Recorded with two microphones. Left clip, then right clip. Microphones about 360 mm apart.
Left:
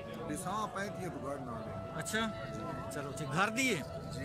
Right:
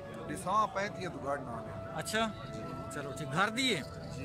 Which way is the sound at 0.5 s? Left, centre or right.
Centre.